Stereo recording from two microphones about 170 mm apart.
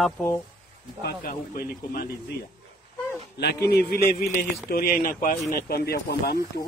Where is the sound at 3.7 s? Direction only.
65° left (ahead or behind).